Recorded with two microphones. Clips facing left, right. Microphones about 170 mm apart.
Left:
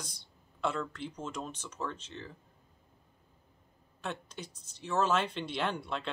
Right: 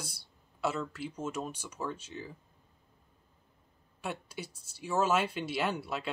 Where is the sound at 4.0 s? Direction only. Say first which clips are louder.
Right 1 dB; 10° right (ahead or behind).